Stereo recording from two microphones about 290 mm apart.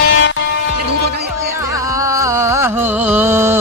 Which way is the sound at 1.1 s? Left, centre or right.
Right.